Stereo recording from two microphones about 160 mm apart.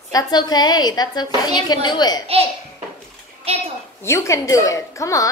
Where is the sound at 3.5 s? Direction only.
35° right (ahead or behind).